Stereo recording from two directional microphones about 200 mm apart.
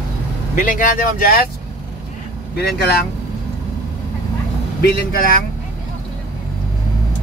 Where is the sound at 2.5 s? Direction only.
50° left (ahead or behind).